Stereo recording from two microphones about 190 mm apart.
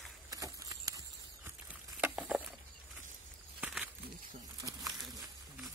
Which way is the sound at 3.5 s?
5° right (ahead or behind).